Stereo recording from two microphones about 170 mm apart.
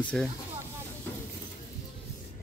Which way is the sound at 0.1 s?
Centre (ahead or behind).